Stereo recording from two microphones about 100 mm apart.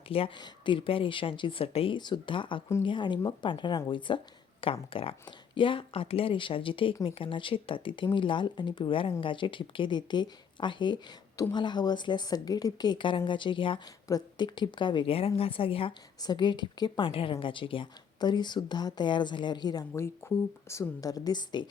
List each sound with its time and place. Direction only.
0.1 s speech: 70° left (ahead or behind)
0.3 s speech: 50° left (ahead or behind); by 2.0 s 70° left (ahead or behind)
2.0 s a woman's voice: 50° left (ahead or behind); by 15.9 s 65° left (ahead or behind)
16.2 s a woman's voice: 45° left (ahead or behind)
17.1 s a woman's voice: 65° left (ahead or behind); by 19.9 s 40° left (ahead or behind)
19.9 s speech: 25° left (ahead or behind); by 21.7 s 50° left (ahead or behind)